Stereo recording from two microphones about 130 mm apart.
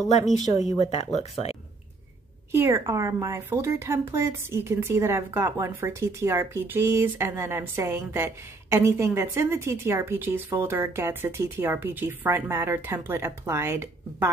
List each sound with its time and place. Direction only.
0.7 s speech: 60° left (ahead or behind)
2.5 s a woman's voice: 20° right (ahead or behind)